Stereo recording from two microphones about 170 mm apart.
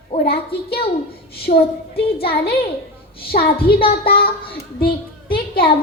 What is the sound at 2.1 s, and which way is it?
Child singing, 65° left (ahead or behind).